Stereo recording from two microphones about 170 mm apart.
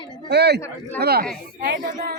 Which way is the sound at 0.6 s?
10° left (ahead or behind).